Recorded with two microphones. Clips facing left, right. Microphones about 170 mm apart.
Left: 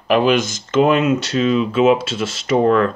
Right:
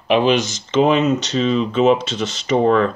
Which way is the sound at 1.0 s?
10° left (ahead or behind).